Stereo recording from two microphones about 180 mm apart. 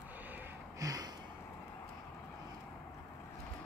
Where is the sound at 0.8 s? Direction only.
20° right (ahead or behind).